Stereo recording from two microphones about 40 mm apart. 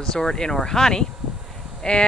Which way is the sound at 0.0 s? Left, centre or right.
Centre.